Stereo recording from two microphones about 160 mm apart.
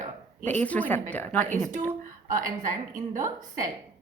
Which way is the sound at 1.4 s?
50° right (ahead or behind).